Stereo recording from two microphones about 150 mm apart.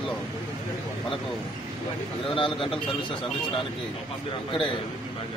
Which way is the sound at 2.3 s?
35° left (ahead or behind).